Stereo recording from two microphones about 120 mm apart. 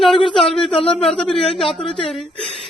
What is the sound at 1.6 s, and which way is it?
Speech, 45° left (ahead or behind).